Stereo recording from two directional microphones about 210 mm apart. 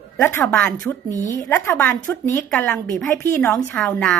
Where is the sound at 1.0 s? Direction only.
15° right (ahead or behind).